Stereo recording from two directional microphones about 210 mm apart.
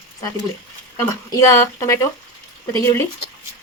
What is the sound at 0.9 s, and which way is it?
A woman's voice, 15° left (ahead or behind).